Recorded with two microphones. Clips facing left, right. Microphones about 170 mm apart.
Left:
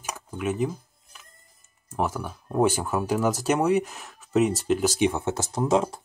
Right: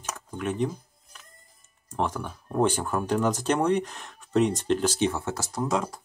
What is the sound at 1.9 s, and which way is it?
Speech, 10° left (ahead or behind).